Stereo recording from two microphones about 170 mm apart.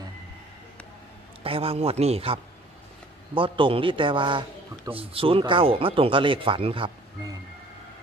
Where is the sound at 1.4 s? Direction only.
35° right (ahead or behind).